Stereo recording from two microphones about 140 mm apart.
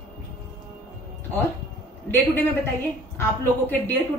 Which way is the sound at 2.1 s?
15° left (ahead or behind).